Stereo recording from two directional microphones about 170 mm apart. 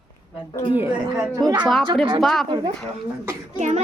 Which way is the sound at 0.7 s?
10° right (ahead or behind).